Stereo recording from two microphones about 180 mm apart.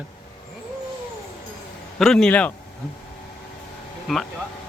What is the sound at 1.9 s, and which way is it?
Speech, centre (ahead or behind).